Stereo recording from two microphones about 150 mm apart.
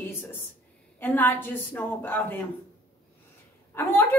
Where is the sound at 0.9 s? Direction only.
15° left (ahead or behind).